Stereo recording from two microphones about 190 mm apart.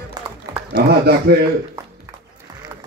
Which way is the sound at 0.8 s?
60° right (ahead or behind).